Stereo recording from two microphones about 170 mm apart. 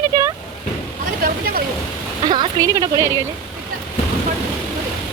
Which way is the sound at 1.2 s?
60° right (ahead or behind).